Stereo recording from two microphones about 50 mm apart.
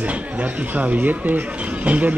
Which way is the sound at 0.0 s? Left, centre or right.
Right.